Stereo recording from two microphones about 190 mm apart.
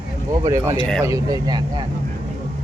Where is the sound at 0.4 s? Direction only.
15° right (ahead or behind).